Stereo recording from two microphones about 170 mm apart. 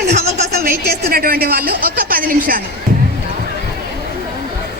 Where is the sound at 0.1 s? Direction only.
40° right (ahead or behind).